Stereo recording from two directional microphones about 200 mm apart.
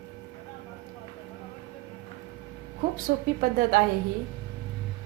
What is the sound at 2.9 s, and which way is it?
Speech, 45° right (ahead or behind).